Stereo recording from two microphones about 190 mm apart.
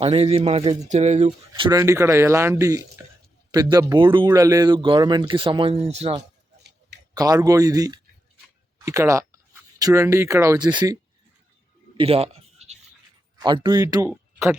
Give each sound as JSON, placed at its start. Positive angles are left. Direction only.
{"t": 0.0, "sound": "speech", "side_deg": -35}
{"t": 1.8, "sound": "speech", "side_deg": -15}
{"t": 7.1, "sound": "speech", "side_deg": -20}
{"t": 11.9, "sound": "a sound", "side_deg": -30}
{"t": 13.4, "sound": "speech", "side_deg": -20}